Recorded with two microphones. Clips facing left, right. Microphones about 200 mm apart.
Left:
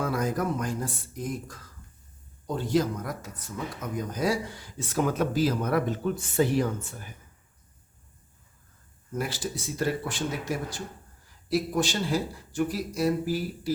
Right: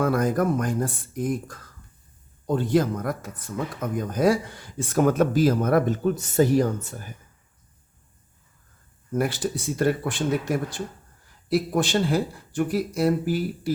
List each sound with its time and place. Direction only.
0.0 s speech: 55° right (ahead or behind)
2.6 s speech: 55° right (ahead or behind)
9.1 s speech: 55° right (ahead or behind)